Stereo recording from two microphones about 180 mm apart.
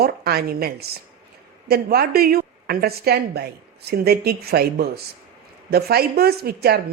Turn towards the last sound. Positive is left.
turn(degrees=-60)  # may be behind; listen again after turning